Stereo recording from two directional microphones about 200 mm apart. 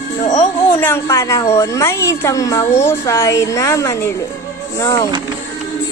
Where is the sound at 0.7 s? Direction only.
15° left (ahead or behind).